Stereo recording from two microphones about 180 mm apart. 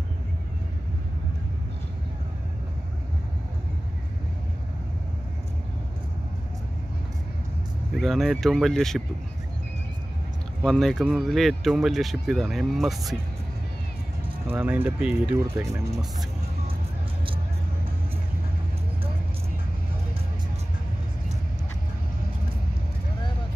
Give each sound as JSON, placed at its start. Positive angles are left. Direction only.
{"t": 7.9, "sound": "speech", "side_deg": 0}
{"t": 10.6, "sound": "speech", "side_deg": 0}
{"t": 14.5, "sound": "speech", "side_deg": -10}